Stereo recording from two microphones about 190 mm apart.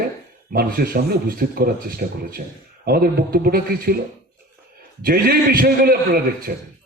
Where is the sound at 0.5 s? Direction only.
50° right (ahead or behind).